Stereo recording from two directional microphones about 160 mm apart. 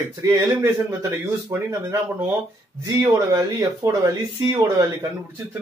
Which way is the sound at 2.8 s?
20° right (ahead or behind).